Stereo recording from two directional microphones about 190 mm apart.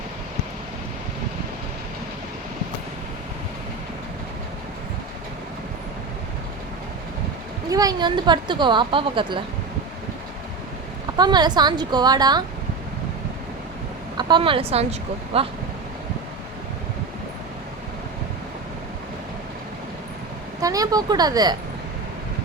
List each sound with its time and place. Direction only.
7.7 s a woman's voice: 20° right (ahead or behind)
11.2 s a woman's voice: 20° right (ahead or behind)
14.2 s a woman's voice: 25° right (ahead or behind)
20.6 s a woman's voice: 20° right (ahead or behind)